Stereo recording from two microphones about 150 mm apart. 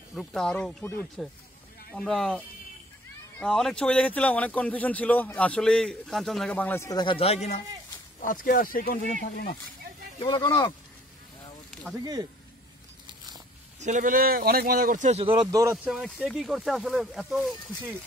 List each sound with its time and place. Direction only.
0.1 s speech: centre (ahead or behind); by 7.6 s 45° left (ahead or behind)
8.2 s speech: 65° left (ahead or behind)
9.2 s speech: 90° left
10.1 s speech: 30° left (ahead or behind)
12.0 s speech: 25° right (ahead or behind)
13.7 s speech: 55° right (ahead or behind)
15.0 s speech: 40° right (ahead or behind); by 15.9 s 20° right (ahead or behind)
15.9 s speech: 5° right (ahead or behind)